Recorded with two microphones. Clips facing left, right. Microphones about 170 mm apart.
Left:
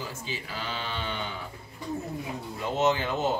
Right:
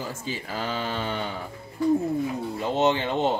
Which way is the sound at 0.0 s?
45° right (ahead or behind).